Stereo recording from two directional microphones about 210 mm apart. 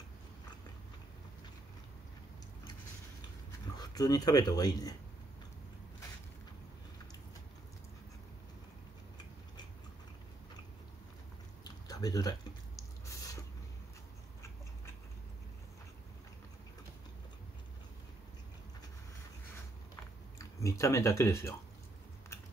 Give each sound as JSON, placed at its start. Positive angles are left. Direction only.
{"t": 3.7, "sound": "speech", "side_deg": 20}
{"t": 11.6, "sound": "a sound", "side_deg": 20}
{"t": 20.3, "sound": "speech", "side_deg": 15}